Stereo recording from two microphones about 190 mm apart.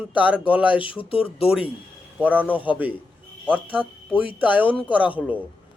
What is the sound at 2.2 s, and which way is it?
Speech, 10° right (ahead or behind).